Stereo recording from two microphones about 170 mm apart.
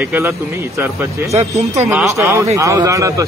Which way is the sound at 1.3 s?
40° right (ahead or behind).